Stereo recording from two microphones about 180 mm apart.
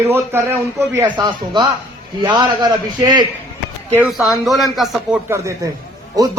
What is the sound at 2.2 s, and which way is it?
A man's voice, 25° right (ahead or behind).